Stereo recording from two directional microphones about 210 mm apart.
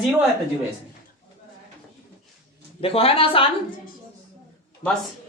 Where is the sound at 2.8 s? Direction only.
25° left (ahead or behind).